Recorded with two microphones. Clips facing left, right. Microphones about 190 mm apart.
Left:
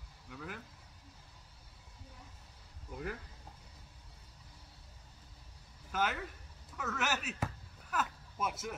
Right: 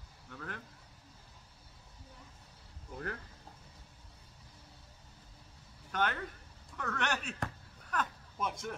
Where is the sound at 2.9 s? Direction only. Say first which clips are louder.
Even; 5° left (ahead or behind).